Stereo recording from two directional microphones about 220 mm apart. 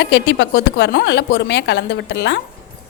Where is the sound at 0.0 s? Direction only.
55° left (ahead or behind).